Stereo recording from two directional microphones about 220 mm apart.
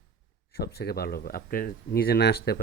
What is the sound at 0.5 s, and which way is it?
Speech, 45° left (ahead or behind).